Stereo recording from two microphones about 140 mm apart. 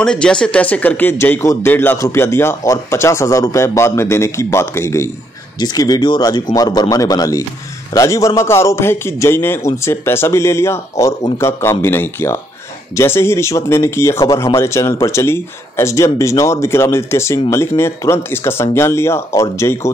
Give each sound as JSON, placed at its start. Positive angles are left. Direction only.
{"t": 0.0, "sound": "speech", "side_deg": 5}